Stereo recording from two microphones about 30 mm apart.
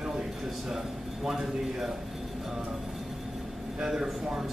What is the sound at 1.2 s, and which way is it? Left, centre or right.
Speech, centre.